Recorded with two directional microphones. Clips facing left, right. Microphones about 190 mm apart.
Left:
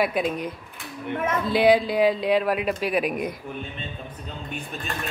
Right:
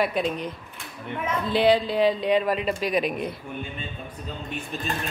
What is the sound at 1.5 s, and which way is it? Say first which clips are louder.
Speech: left 1 dB; 10° left (ahead or behind).